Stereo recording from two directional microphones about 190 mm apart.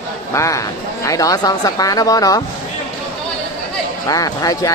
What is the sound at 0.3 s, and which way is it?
Speech, 15° left (ahead or behind).